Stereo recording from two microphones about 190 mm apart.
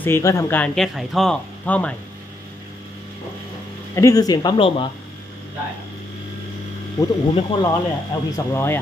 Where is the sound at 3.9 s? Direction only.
15° left (ahead or behind).